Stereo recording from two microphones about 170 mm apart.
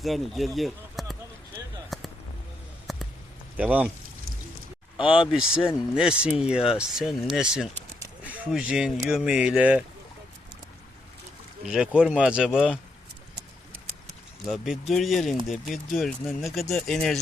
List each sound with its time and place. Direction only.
0.0 s speech: centre (ahead or behind)
1.9 s a sound: centre (ahead or behind)
3.6 s speech: 10° right (ahead or behind)
4.9 s speech: 30° left (ahead or behind)
5.2 s speech: 5° right (ahead or behind)
11.6 s speech: 5° right (ahead or behind)
14.4 s speech: centre (ahead or behind)